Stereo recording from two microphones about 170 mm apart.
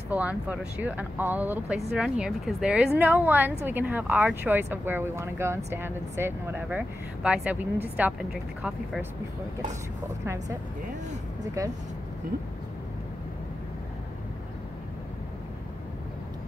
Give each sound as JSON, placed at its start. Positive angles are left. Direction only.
{"t": 0.1, "sound": "a woman's voice", "side_deg": -10}